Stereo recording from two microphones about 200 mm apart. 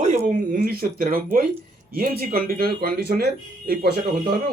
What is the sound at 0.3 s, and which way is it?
A man's voice, 40° right (ahead or behind).